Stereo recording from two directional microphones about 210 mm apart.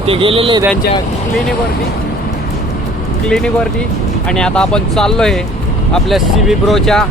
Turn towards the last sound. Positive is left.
turn(degrees=0)  # may be behind; listen again after turning